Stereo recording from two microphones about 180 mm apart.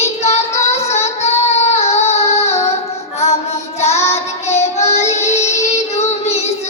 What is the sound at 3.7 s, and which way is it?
Child singing, 35° left (ahead or behind).